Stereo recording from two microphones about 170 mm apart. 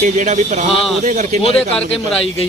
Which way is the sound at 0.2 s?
45° right (ahead or behind).